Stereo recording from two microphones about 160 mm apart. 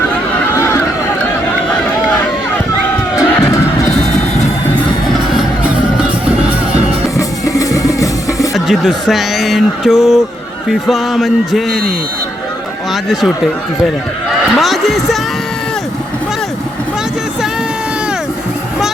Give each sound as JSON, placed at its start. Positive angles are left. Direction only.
{"t": 0.5, "sound": "a sound", "side_deg": 15}
{"t": 5.6, "sound": "music", "side_deg": -5}
{"t": 7.2, "sound": "music", "side_deg": 20}
{"t": 8.5, "sound": "speech", "side_deg": 0}
{"t": 12.9, "sound": "speech", "side_deg": 0}
{"t": 14.3, "sound": "a sound", "side_deg": 0}